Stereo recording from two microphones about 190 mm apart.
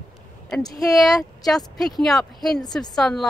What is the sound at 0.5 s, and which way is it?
Speech, centre (ahead or behind).